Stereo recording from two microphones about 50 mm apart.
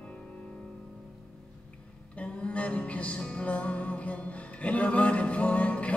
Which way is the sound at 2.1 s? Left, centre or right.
Left.